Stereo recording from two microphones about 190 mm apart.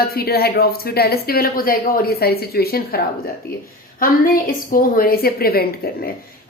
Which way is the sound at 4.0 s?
45° left (ahead or behind).